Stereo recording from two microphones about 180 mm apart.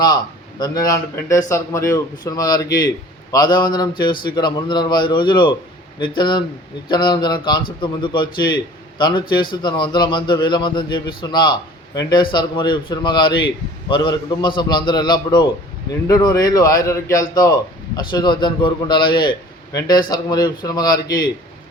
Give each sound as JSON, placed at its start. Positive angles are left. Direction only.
{"t": 0.6, "sound": "a man's voice", "side_deg": 20}